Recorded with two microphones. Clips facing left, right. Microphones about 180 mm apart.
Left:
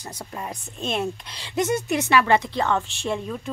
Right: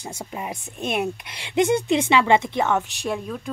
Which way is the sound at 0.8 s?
15° right (ahead or behind).